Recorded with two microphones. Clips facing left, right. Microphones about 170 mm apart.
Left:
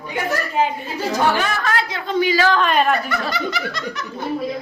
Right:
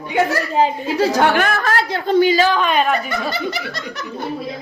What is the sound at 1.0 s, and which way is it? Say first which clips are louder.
Speech: right 4 dB; 70° right (ahead or behind).